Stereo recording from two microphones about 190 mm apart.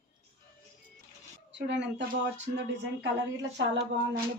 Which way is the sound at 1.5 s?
70° right (ahead or behind).